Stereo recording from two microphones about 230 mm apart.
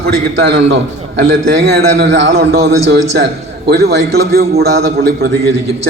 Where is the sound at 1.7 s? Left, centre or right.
Right.